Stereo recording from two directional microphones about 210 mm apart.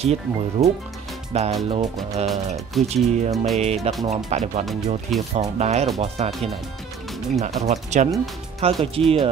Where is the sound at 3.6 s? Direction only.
30° right (ahead or behind).